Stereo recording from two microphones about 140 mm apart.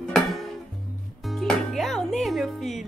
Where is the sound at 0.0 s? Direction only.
Centre (ahead or behind).